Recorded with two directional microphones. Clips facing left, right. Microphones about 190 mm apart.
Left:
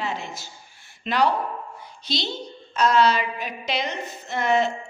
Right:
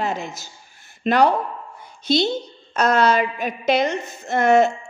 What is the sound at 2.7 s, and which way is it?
A woman's voice, 50° right (ahead or behind).